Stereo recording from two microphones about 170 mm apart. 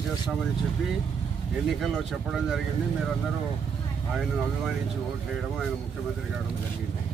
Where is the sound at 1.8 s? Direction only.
Centre (ahead or behind).